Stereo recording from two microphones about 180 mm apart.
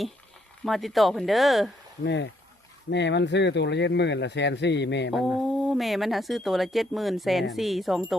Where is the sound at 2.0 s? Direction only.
80° left.